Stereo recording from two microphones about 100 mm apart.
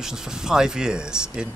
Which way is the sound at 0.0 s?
5° right (ahead or behind).